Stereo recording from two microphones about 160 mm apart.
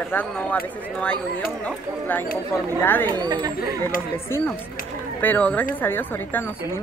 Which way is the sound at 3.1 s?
25° right (ahead or behind).